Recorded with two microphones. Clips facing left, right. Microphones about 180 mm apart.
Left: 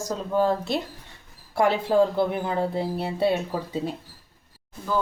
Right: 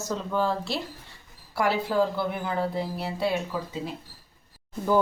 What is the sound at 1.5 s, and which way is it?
A woman's voice, 25° left (ahead or behind).